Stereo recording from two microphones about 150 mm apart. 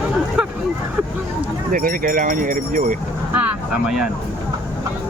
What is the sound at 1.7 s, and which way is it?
Speech, 70° right (ahead or behind).